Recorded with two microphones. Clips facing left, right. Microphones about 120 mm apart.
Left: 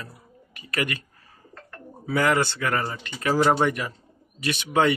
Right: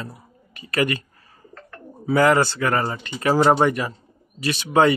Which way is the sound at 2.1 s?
35° right (ahead or behind).